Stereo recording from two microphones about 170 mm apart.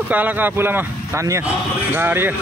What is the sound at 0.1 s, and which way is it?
Speech, 10° right (ahead or behind).